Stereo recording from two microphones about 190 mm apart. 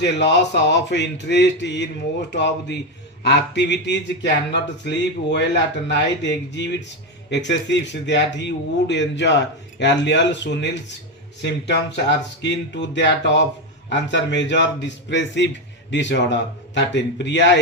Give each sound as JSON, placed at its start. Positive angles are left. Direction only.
{"t": 0.0, "sound": "speech", "side_deg": 65}